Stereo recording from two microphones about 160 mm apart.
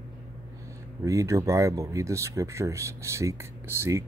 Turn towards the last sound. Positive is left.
turn(degrees=-20)  # may be behind; listen again after turning